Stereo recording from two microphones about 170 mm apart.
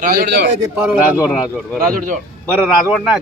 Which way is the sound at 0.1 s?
65° right (ahead or behind).